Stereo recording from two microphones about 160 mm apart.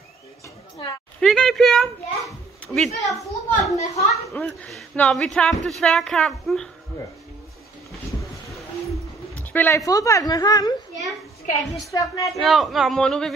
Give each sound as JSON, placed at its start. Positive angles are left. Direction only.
{"t": 1.2, "sound": "a child's voice", "side_deg": 0}
{"t": 3.7, "sound": "a woman's voice", "side_deg": 45}
{"t": 4.1, "sound": "a woman's voice", "side_deg": 10}
{"t": 9.4, "sound": "speech", "side_deg": 10}
{"t": 11.9, "sound": "speech", "side_deg": 20}
{"t": 12.4, "sound": "speech", "side_deg": 0}